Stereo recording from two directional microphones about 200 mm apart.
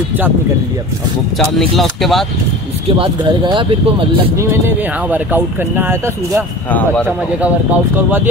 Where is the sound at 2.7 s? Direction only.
30° right (ahead or behind).